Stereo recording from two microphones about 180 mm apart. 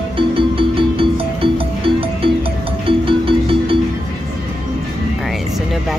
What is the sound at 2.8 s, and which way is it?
Music, 30° right (ahead or behind).